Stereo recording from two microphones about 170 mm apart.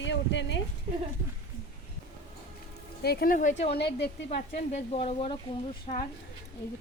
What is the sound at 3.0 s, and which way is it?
Speech, 60° left (ahead or behind).